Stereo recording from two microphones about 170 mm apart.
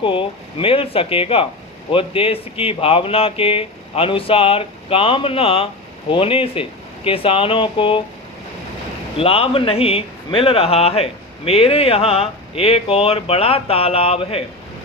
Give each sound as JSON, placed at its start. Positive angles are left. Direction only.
{"t": 0.0, "sound": "speech", "side_deg": 30}
{"t": 9.2, "sound": "speech", "side_deg": 35}